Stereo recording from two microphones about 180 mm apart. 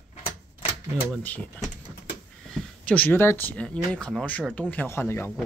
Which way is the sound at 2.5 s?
5° left (ahead or behind).